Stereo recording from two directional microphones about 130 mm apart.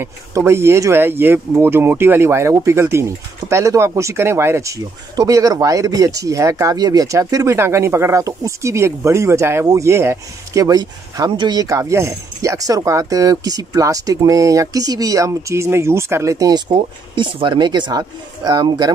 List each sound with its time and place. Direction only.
0.0 s speech: 20° right (ahead or behind)
17.1 s speech: 40° right (ahead or behind)